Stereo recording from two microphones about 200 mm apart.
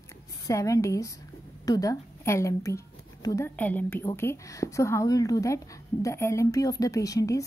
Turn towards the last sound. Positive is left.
turn(degrees=15)  # may be behind; listen again after turning